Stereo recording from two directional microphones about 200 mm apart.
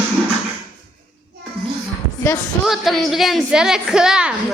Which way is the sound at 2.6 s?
Centre (ahead or behind).